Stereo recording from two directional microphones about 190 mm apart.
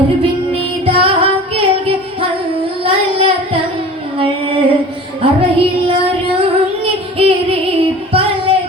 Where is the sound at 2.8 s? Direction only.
30° right (ahead or behind).